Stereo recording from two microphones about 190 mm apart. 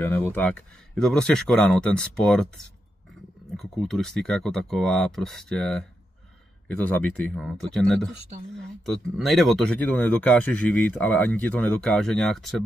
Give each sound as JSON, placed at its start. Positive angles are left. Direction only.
{"t": 0.0, "sound": "speech", "side_deg": 10}